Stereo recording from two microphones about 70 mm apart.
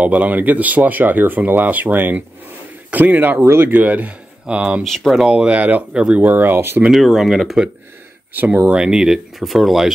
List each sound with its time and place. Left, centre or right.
0.0 s speech: right
4.8 s speech: centre
5.1 s speech: centre
6.2 s speech: right
6.9 s speech: centre
8.7 s speech: centre